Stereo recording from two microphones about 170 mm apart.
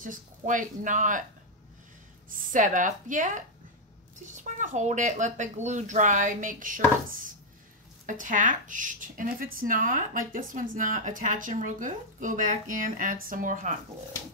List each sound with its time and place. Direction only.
0.0 s speech: 50° right (ahead or behind)
2.5 s speech: 50° right (ahead or behind)
8.1 s speech: 50° right (ahead or behind)